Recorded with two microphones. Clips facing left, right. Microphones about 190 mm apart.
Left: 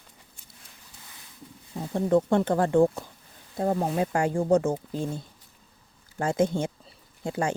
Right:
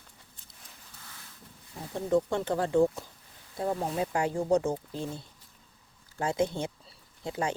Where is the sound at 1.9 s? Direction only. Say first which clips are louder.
Left 5 dB; 55° left (ahead or behind).